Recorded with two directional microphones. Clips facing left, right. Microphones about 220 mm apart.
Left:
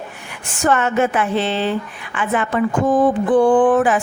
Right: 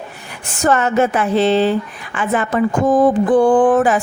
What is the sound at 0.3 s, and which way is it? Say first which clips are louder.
A woman's voice: right 2 dB; 40° right (ahead or behind).